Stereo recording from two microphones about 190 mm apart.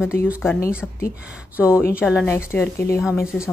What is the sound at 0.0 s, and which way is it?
Speech, 10° left (ahead or behind).